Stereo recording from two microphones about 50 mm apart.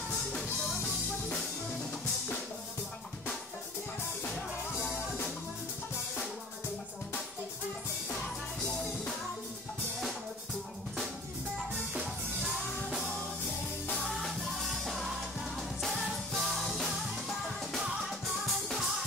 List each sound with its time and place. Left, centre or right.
8.1 s music: centre
11.9 s music: right
14.0 s music: centre